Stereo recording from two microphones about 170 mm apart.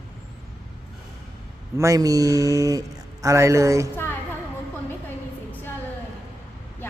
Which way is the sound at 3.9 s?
10° left (ahead or behind).